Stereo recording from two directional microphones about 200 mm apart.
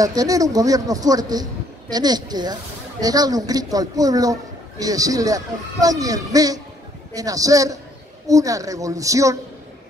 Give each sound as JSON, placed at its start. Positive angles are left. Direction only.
{"t": 0.0, "sound": "a man's voice", "side_deg": -15}